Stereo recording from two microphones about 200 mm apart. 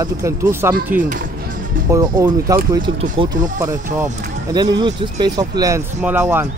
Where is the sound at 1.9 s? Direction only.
15° right (ahead or behind).